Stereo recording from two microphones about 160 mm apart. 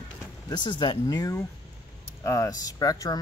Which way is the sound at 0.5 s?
30° left (ahead or behind).